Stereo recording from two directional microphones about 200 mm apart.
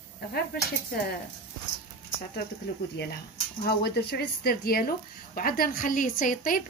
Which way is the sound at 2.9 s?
55° left (ahead or behind).